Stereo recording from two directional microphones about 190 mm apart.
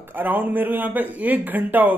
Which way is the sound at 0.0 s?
10° right (ahead or behind).